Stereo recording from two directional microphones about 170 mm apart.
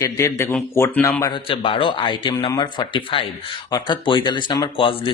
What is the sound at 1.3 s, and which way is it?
Speech, 30° left (ahead or behind).